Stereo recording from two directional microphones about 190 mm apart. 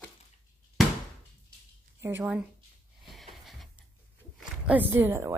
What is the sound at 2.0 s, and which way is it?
Speech, 10° right (ahead or behind).